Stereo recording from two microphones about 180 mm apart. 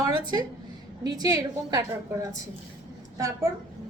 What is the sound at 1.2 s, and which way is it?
A woman's voice, 20° right (ahead or behind).